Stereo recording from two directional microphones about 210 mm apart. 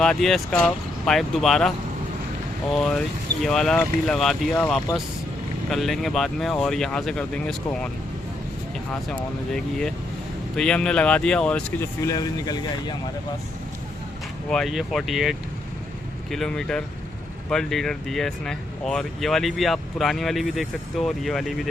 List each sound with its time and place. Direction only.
0.0 s speech: centre (ahead or behind)
2.7 s speech: 5° left (ahead or behind)
8.9 s speech: 5° left (ahead or behind)
12.0 s speech: 20° left (ahead or behind)
14.5 s speech: centre (ahead or behind)